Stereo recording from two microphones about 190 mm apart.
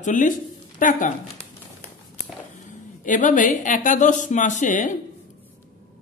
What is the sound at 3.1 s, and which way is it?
A woman's voice, 45° left (ahead or behind).